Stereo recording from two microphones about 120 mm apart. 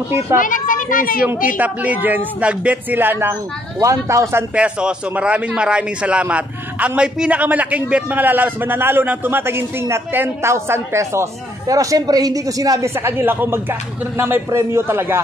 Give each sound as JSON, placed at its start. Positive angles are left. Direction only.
{"t": 0.5, "sound": "a child's voice", "side_deg": 90}
{"t": 1.6, "sound": "a man's voice", "side_deg": -15}
{"t": 4.6, "sound": "a man's voice", "side_deg": -10}